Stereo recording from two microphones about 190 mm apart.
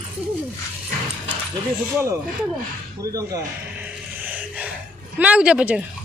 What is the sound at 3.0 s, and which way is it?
Speech, 20° right (ahead or behind).